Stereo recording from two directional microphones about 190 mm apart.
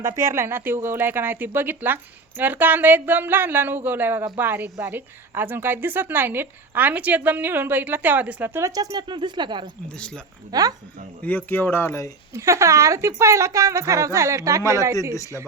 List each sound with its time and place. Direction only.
0.0 s a woman's voice: 15° right (ahead or behind)
11.2 s speech: 10° left (ahead or behind)
12.3 s a woman's voice: 15° right (ahead or behind)
15.1 s speech: 15° left (ahead or behind)